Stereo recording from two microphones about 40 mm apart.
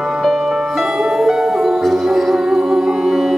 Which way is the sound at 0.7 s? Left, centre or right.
Centre.